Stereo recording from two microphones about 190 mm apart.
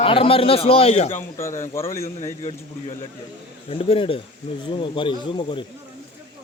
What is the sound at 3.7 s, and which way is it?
A man's voice, 30° left (ahead or behind).